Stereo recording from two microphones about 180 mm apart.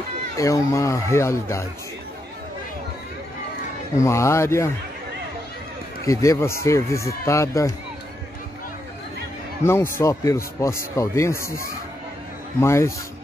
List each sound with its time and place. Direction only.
0.4 s a man's voice: 15° left (ahead or behind)
4.0 s a man's voice: 15° left (ahead or behind)
6.0 s a man's voice: 15° left (ahead or behind)
9.7 s a man's voice: 15° left (ahead or behind)